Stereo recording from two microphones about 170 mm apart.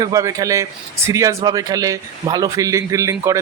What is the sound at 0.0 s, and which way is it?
A man's voice, 20° right (ahead or behind).